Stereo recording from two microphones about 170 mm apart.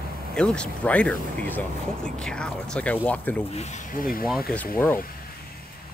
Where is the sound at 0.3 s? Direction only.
5° left (ahead or behind).